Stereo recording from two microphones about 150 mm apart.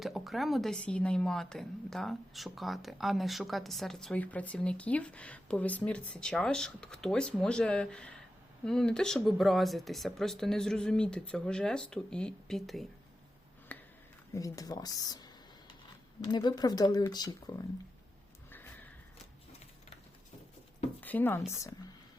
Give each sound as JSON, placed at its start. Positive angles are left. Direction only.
{"t": 0.0, "sound": "speech", "side_deg": 0}
{"t": 13.7, "sound": "a sound", "side_deg": 10}
{"t": 14.3, "sound": "speech", "side_deg": 25}
{"t": 21.0, "sound": "speech", "side_deg": 10}